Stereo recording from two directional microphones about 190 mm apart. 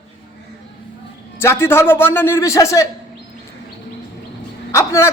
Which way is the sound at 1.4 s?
15° left (ahead or behind).